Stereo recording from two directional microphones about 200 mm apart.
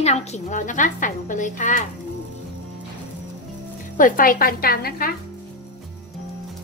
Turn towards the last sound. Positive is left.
turn(degrees=50)  # may be behind; listen again after turning